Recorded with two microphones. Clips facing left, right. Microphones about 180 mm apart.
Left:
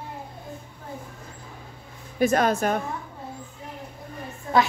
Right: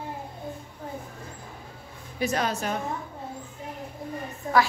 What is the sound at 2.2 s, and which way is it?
Speech, 50° left (ahead or behind).